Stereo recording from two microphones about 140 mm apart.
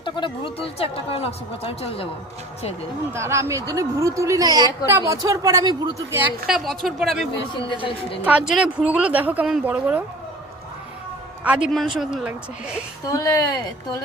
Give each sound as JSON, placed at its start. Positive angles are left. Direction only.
{"t": 0.0, "sound": "a woman's voice", "side_deg": 40}
{"t": 3.1, "sound": "speech", "side_deg": -20}
{"t": 6.1, "sound": "a woman's voice", "side_deg": -15}
{"t": 6.5, "sound": "speech", "side_deg": 0}
{"t": 7.7, "sound": "a woman's voice", "side_deg": 40}
{"t": 8.2, "sound": "a woman's voice", "side_deg": -5}
{"t": 11.4, "sound": "a woman's voice", "side_deg": -10}
{"t": 13.1, "sound": "speech", "side_deg": 25}